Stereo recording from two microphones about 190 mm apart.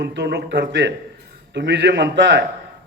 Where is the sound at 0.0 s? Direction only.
65° right (ahead or behind).